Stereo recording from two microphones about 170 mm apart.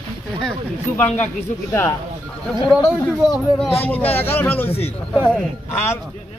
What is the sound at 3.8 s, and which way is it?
Speech, 10° left (ahead or behind).